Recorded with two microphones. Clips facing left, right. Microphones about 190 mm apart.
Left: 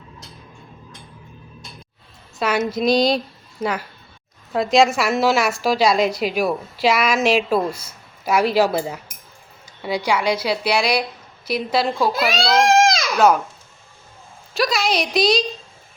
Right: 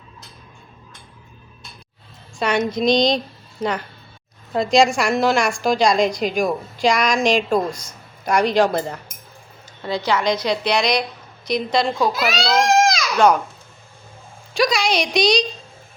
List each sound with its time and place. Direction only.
2.4 s a woman's voice: 5° left (ahead or behind)
12.6 s baby cry: 25° left (ahead or behind)
13.1 s a woman's voice: 5° left (ahead or behind)
14.5 s a woman's voice: centre (ahead or behind)